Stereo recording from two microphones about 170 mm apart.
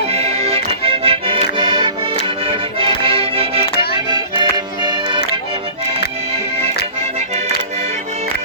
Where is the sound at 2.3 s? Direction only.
30° right (ahead or behind).